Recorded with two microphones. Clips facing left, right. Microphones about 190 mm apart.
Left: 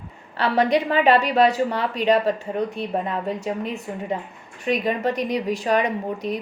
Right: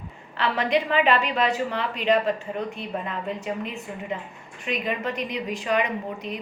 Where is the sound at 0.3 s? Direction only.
40° left (ahead or behind).